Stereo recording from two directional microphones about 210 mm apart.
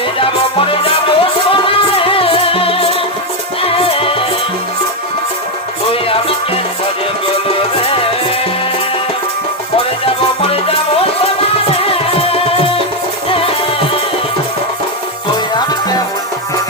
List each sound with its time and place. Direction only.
0.6 s music: 25° left (ahead or behind)
3.8 s music: 25° left (ahead or behind)
5.9 s music: 25° left (ahead or behind)
7.9 s music: 25° left (ahead or behind)